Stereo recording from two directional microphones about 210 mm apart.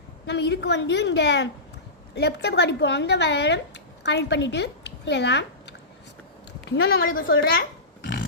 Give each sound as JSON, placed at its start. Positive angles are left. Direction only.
{"t": 0.3, "sound": "a woman's voice", "side_deg": 55}
{"t": 7.2, "sound": "a woman's voice", "side_deg": 45}